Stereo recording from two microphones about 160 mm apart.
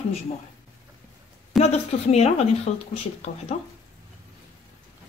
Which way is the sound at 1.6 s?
40° left (ahead or behind).